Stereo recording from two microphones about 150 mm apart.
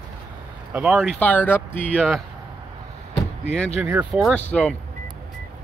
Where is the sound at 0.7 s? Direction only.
Centre (ahead or behind).